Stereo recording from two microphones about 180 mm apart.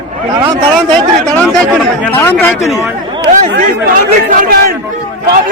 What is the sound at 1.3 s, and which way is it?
Chatter, 5° left (ahead or behind).